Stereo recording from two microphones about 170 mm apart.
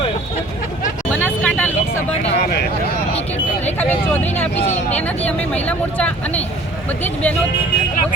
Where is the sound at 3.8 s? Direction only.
10° left (ahead or behind).